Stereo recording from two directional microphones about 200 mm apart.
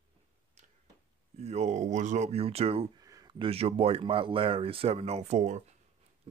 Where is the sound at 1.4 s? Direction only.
35° right (ahead or behind).